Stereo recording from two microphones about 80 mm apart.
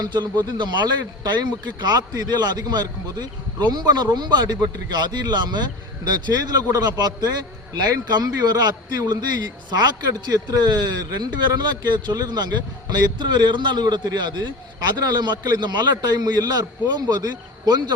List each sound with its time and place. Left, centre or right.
0.0 s a man's voice: right
6.1 s a man's voice: right